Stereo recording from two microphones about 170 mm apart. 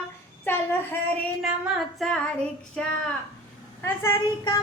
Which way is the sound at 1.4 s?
Centre (ahead or behind).